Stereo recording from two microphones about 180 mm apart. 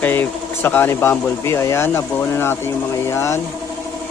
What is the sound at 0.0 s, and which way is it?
Speech, 10° left (ahead or behind).